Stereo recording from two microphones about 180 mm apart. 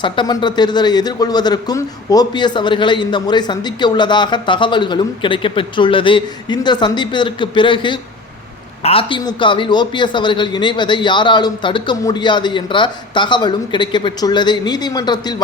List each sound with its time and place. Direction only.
0.0 s a man's voice: 25° left (ahead or behind)